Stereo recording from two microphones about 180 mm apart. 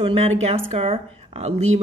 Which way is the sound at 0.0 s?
35° right (ahead or behind).